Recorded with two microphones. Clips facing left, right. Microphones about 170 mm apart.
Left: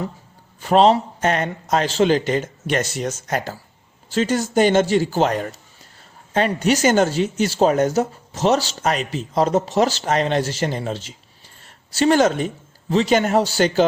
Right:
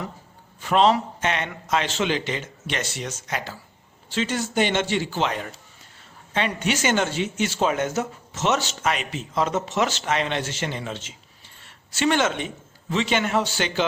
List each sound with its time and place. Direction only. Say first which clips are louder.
0.6 s a man's voice: left 4 dB; 35° left (ahead or behind)